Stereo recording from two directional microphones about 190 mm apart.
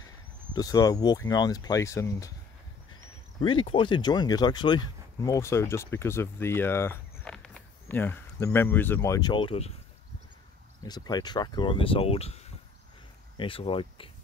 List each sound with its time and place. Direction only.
0.5 s speech: 20° left (ahead or behind)
3.3 s speech: 25° left (ahead or behind)
10.8 s speech: 20° left (ahead or behind)